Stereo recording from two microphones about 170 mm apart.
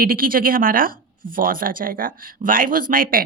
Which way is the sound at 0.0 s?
55° right (ahead or behind).